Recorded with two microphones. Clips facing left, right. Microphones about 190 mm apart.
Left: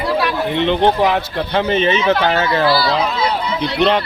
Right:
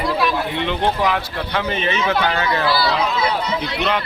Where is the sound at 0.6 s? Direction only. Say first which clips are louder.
Left 8 dB; 25° left (ahead or behind).